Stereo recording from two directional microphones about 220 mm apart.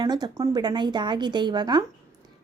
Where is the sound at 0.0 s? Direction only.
20° right (ahead or behind).